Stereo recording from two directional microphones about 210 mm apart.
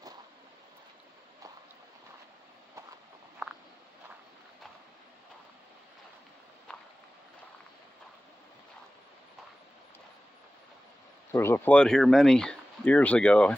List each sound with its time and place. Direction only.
6.7 s walk: 5° left (ahead or behind)
11.3 s speech: 10° left (ahead or behind)